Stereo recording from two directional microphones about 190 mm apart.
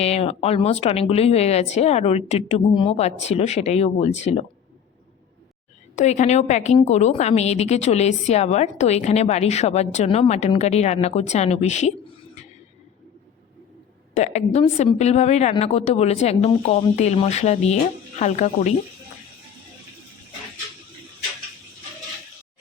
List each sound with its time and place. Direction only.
0.0 s a woman's voice: 35° left (ahead or behind)
6.0 s a woman's voice: 40° left (ahead or behind)
14.2 s a woman's voice: 35° left (ahead or behind)